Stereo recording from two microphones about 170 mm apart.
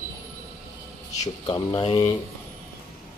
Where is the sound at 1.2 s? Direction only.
20° left (ahead or behind).